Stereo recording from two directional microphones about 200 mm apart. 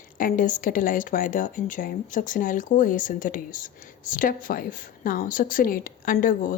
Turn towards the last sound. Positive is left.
turn(degrees=40)  # may be behind; listen again after turning